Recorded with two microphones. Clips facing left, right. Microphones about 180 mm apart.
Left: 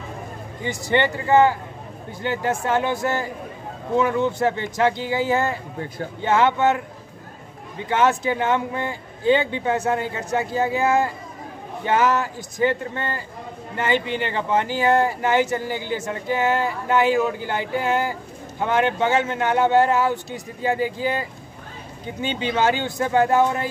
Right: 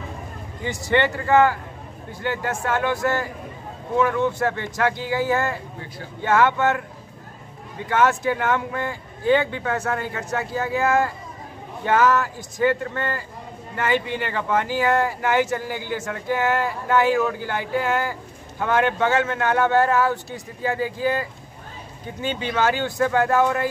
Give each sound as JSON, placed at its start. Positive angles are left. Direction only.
{"t": 0.7, "sound": "speech", "side_deg": 15}
{"t": 7.9, "sound": "speech", "side_deg": 20}